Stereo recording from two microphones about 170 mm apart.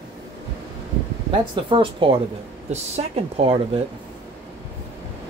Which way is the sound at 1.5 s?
30° right (ahead or behind).